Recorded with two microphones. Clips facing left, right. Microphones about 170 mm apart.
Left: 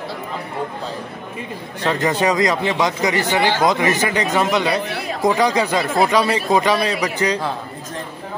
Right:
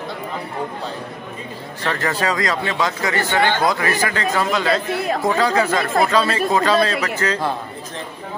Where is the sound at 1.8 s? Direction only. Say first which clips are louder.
Left 4 dB; 20° left (ahead or behind).